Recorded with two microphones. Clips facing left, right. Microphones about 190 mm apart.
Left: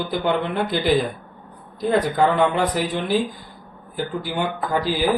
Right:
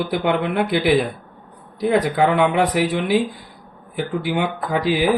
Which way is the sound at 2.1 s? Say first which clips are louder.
Right 2 dB; 70° right (ahead or behind).